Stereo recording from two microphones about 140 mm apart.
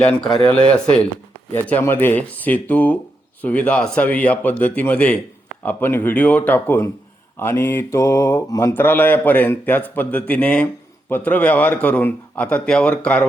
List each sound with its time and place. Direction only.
0.0 s speech: 5° left (ahead or behind)
0.4 s mantra: 10° left (ahead or behind)